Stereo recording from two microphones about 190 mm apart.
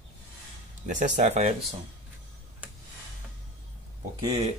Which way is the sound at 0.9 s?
40° right (ahead or behind).